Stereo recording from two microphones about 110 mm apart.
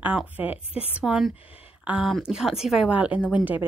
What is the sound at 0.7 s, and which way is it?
Speech, 60° left (ahead or behind).